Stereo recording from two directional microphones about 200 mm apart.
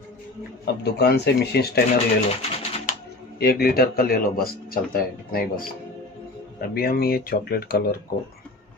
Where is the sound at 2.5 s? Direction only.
40° left (ahead or behind).